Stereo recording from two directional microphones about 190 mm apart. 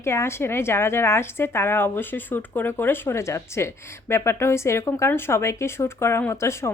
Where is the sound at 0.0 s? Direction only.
15° left (ahead or behind).